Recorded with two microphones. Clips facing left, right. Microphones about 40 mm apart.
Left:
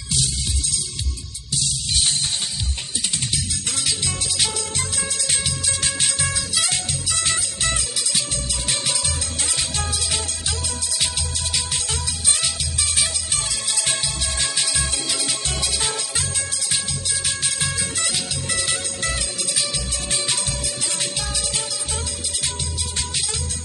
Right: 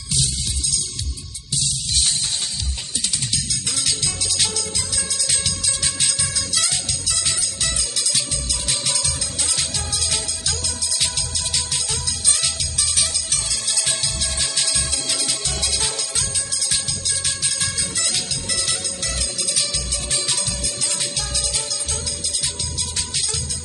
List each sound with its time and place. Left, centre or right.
3.5 s music: left
4.9 s music: left
8.4 s music: left
9.0 s music: left
10.0 s music: centre
12.8 s music: left
14.5 s music: centre
17.6 s music: centre
18.5 s music: left